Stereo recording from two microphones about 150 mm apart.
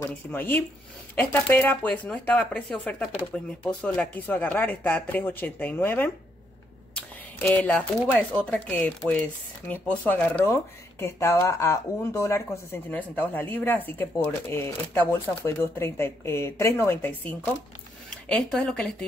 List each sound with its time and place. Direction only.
0.3 s speech: 15° left (ahead or behind)
7.3 s speech: 10° left (ahead or behind)